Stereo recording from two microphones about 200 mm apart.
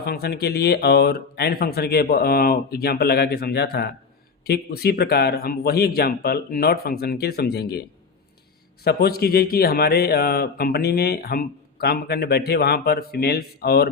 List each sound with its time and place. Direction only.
0.0 s a man's voice: 50° left (ahead or behind)